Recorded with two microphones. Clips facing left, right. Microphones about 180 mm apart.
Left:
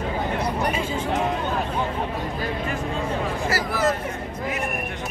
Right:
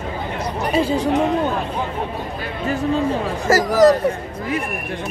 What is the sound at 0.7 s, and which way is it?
Speech, 35° right (ahead or behind).